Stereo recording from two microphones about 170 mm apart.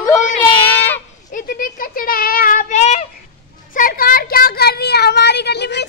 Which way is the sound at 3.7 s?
55° left (ahead or behind).